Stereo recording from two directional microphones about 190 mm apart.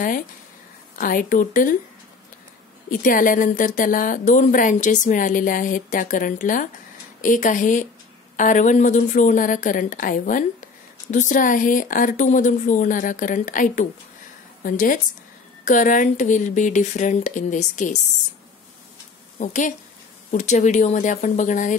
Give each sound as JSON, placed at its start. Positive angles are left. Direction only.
{"t": 0.9, "sound": "a woman's voice", "side_deg": 45}
{"t": 2.9, "sound": "a woman's voice", "side_deg": 45}
{"t": 19.4, "sound": "speech", "side_deg": 40}